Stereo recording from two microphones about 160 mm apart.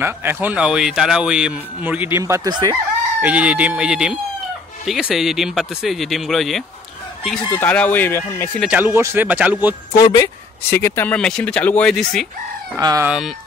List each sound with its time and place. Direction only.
0.0 s speech: 15° right (ahead or behind)
3.2 s speech: 10° right (ahead or behind)
7.5 s speech: 10° left (ahead or behind)
8.5 s speech: 10° right (ahead or behind)
10.7 s speech: 15° left (ahead or behind)
12.7 s speech: 20° right (ahead or behind)
13.0 s speech: 5° right (ahead or behind)